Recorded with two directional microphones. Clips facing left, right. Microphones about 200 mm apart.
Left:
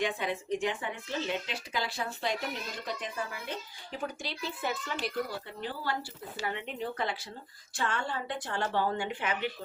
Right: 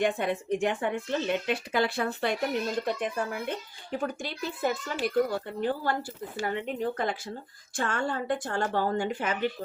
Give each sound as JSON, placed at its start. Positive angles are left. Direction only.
{"t": 0.0, "sound": "speech", "side_deg": -50}